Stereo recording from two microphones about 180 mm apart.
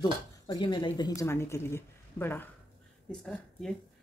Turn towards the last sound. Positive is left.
turn(degrees=5)  # may be behind; listen again after turning